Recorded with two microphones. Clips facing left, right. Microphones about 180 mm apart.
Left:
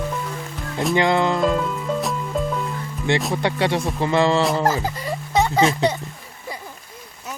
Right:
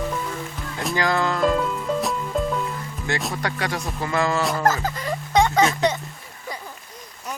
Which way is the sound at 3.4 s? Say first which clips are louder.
Left 6 dB; 25° left (ahead or behind).